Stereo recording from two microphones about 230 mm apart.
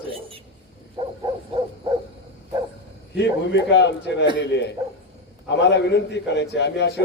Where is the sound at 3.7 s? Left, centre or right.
Left.